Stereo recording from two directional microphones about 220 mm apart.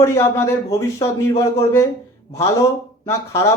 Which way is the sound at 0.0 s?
10° left (ahead or behind).